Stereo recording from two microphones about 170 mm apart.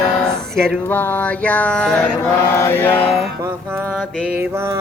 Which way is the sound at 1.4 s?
10° left (ahead or behind).